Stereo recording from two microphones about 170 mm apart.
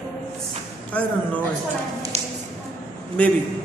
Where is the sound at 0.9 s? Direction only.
10° left (ahead or behind).